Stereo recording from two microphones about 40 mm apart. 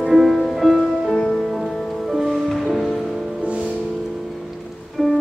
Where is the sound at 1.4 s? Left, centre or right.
Centre.